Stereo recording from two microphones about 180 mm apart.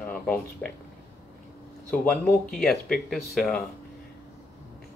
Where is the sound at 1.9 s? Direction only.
5° left (ahead or behind).